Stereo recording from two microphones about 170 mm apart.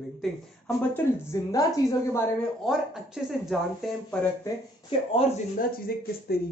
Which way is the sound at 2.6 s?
Centre (ahead or behind).